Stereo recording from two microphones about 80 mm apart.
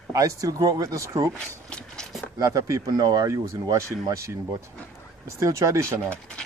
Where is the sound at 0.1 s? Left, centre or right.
Right.